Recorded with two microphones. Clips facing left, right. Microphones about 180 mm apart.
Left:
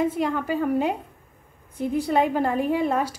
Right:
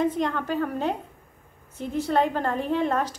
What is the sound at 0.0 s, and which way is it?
A woman's voice, 10° left (ahead or behind).